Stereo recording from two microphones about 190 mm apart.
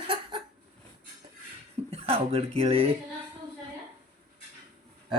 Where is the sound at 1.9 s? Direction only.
30° right (ahead or behind).